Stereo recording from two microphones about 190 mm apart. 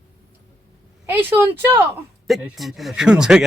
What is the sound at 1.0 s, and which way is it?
Speech, 10° right (ahead or behind).